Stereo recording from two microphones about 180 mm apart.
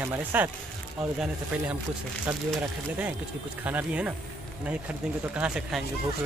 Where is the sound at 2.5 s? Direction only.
10° right (ahead or behind).